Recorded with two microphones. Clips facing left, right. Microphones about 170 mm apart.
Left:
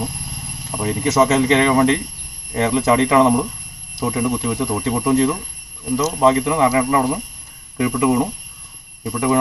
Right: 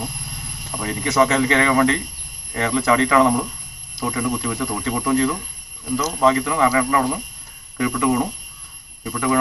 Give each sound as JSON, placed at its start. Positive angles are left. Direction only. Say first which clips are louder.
{"t": 0.8, "sound": "speech", "louder": "left 2 dB", "side_deg": 25}